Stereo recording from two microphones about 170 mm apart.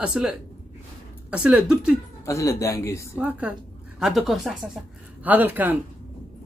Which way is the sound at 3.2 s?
10° right (ahead or behind).